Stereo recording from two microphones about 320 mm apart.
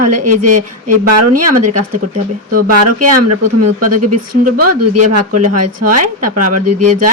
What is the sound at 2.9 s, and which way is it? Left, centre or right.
Speech, right.